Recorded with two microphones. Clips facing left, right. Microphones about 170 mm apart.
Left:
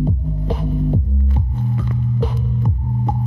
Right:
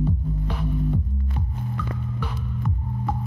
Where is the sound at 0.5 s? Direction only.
45° left (ahead or behind).